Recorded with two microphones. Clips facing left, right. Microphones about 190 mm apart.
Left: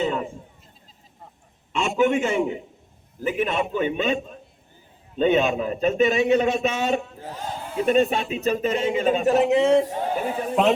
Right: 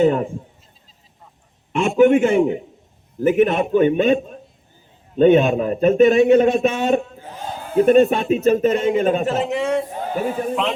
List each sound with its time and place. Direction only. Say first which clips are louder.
0.0 s a man's voice: right 9 dB; 50° right (ahead or behind)
1.7 s a man's voice: right 7 dB; 55° right (ahead or behind)
9.5 s speech: left 3 dB; 25° left (ahead or behind)
10.5 s a man's voice: left 3 dB; 45° left (ahead or behind)